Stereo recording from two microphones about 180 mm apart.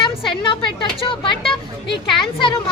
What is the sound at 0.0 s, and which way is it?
Speech, 25° left (ahead or behind).